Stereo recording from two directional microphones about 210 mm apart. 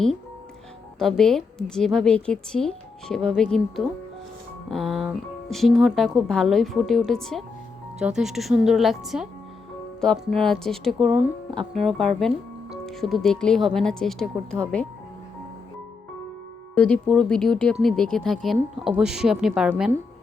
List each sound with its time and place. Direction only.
0.9 s a woman's voice: centre (ahead or behind)
16.7 s a woman's voice: 5° left (ahead or behind)